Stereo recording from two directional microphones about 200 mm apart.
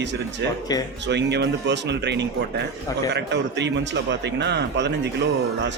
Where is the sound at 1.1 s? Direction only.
60° right (ahead or behind).